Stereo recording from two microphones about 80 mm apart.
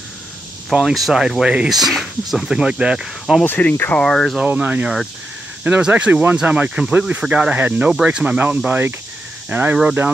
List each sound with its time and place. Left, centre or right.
0.7 s speech: centre
3.4 s speech: left
4.0 s speech: centre
4.4 s speech: centre